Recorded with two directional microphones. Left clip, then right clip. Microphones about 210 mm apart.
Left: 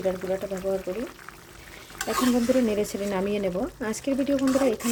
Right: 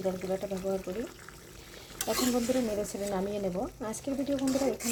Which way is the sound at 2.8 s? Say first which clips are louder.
Left 5 dB; 15° left (ahead or behind).